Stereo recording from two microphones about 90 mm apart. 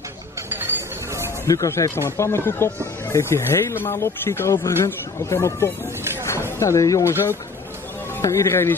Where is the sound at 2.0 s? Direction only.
30° left (ahead or behind).